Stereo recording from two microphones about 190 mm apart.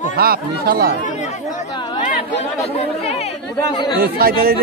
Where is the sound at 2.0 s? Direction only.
40° left (ahead or behind).